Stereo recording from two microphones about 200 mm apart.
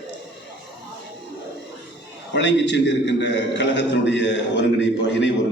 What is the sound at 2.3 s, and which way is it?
A man's voice, 60° left (ahead or behind).